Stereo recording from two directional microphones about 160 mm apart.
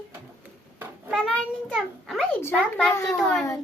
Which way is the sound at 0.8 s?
Centre (ahead or behind).